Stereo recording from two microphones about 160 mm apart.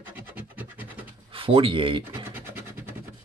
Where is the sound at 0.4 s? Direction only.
10° right (ahead or behind).